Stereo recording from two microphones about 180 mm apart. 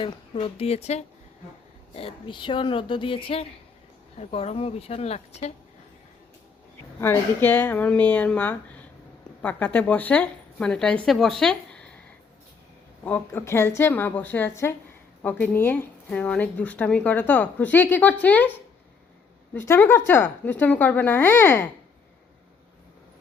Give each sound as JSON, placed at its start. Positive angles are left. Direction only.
{"t": 0.0, "sound": "speech", "side_deg": 30}
{"t": 7.0, "sound": "speech", "side_deg": 10}
{"t": 13.1, "sound": "speech", "side_deg": 10}
{"t": 19.5, "sound": "speech", "side_deg": 10}